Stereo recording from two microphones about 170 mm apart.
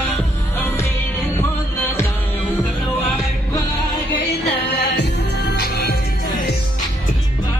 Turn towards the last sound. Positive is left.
turn(degrees=70)  # may be behind; listen again after turning